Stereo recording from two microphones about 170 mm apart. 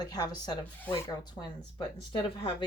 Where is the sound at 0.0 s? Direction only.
25° left (ahead or behind).